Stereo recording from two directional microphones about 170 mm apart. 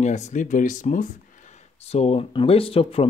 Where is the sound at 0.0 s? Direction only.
45° left (ahead or behind).